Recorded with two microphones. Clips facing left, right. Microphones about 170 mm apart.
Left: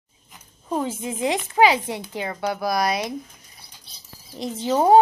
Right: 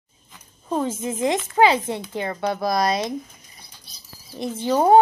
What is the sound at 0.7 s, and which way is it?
Speech, 15° left (ahead or behind).